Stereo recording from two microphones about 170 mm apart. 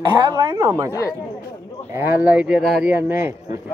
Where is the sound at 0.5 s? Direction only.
20° right (ahead or behind).